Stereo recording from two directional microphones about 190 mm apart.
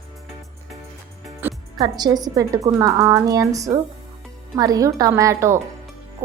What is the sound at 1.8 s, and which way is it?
A woman's voice, 20° right (ahead or behind).